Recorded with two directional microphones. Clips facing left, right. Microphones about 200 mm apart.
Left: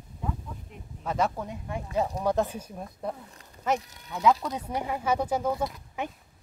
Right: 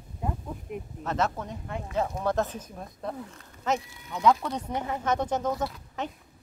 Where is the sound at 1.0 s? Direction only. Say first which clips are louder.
Left 1 dB; 10° left (ahead or behind).